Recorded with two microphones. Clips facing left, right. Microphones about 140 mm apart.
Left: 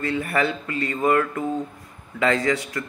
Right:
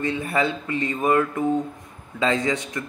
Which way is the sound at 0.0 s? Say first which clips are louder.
Even; 20° right (ahead or behind).